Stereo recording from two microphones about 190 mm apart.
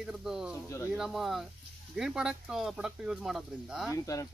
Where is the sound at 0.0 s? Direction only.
5° right (ahead or behind).